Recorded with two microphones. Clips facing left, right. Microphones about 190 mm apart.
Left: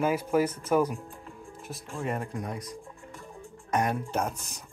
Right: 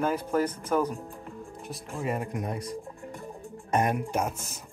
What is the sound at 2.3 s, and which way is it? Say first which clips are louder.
Music: right 3 dB; 25° right (ahead or behind).